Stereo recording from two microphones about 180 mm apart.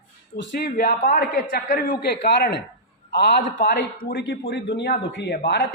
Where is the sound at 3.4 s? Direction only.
50° left (ahead or behind).